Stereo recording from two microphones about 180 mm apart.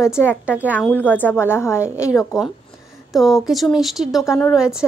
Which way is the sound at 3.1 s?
Centre (ahead or behind).